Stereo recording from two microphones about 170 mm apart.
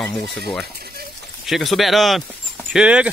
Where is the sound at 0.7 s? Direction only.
65° right (ahead or behind).